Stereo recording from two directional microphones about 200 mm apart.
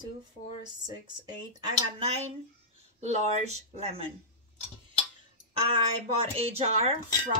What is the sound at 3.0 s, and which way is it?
Speech, 35° right (ahead or behind).